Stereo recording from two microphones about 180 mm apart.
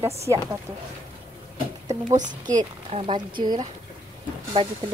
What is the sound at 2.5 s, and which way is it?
Speech, 20° right (ahead or behind).